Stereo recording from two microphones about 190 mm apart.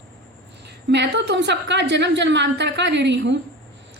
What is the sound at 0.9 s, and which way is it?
A woman's voice, 60° right (ahead or behind).